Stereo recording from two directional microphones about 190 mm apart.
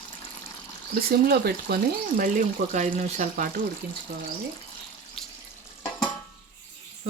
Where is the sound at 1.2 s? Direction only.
55° right (ahead or behind).